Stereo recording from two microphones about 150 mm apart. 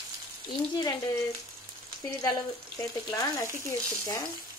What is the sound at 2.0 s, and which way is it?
Speech, 25° left (ahead or behind).